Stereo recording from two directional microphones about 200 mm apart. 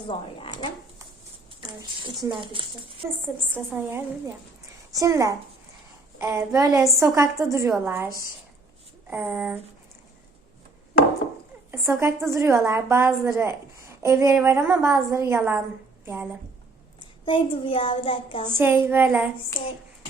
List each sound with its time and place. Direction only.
0.1 s speech: 25° left (ahead or behind)
2.0 s speech: 25° right (ahead or behind)
3.0 s a woman's voice: 10° right (ahead or behind)
11.7 s a woman's voice: 15° right (ahead or behind)
17.2 s a woman's voice: 25° left (ahead or behind)
18.5 s a woman's voice: 10° right (ahead or behind)